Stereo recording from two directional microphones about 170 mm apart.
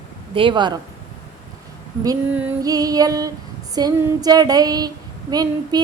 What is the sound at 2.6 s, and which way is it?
A woman's voice, 20° right (ahead or behind).